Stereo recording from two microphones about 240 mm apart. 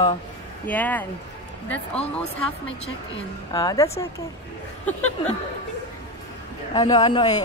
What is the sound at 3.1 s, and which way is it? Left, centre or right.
Speech, centre.